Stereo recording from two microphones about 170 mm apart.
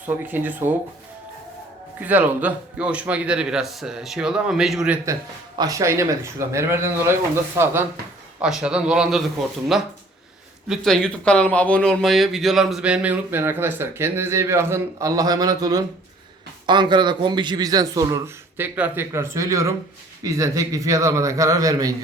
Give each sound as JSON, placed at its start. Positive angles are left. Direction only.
{"t": 0.0, "sound": "speech", "side_deg": -10}
{"t": 2.0, "sound": "a man's voice", "side_deg": -10}
{"t": 5.5, "sound": "a man's voice", "side_deg": -20}